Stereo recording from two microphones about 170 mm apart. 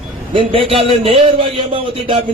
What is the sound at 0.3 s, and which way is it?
A man's voice, 30° right (ahead or behind).